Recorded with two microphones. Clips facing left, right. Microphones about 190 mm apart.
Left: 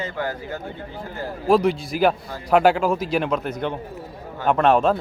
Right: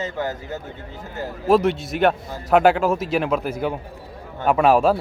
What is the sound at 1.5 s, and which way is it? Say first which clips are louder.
Speech: right 1 dB; centre (ahead or behind).